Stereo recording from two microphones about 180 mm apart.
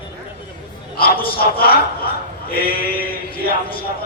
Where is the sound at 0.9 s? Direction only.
55° left (ahead or behind).